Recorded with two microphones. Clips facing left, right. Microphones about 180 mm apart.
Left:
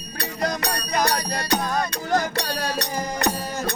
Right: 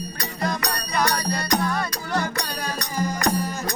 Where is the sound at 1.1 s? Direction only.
30° left (ahead or behind).